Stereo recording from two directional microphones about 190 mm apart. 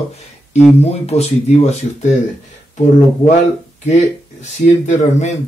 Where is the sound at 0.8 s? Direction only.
35° left (ahead or behind).